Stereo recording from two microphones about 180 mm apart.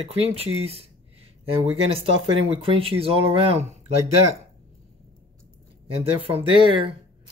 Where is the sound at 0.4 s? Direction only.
35° right (ahead or behind).